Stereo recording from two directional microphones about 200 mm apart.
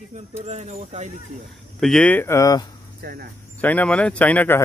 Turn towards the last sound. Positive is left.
turn(degrees=10)  # may be behind; listen again after turning